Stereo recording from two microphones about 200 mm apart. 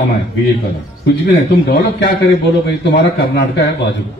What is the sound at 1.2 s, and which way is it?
A man's voice, 60° left (ahead or behind).